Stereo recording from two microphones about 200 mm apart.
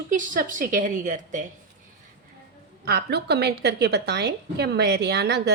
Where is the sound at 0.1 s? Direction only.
40° right (ahead or behind).